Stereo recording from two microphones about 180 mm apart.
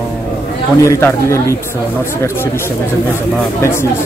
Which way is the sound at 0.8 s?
15° left (ahead or behind).